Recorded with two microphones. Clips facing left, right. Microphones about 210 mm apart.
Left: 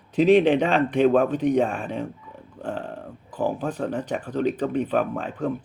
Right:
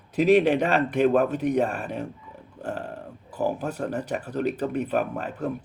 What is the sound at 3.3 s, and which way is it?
Speech, 10° right (ahead or behind).